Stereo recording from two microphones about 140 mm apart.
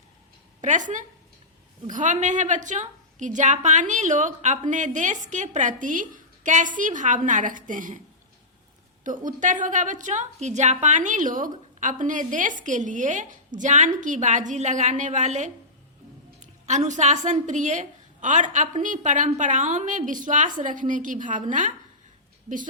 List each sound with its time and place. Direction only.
0.6 s a woman's voice: 65° right (ahead or behind)
9.0 s a woman's voice: 70° right (ahead or behind)
16.6 s a woman's voice: 60° right (ahead or behind)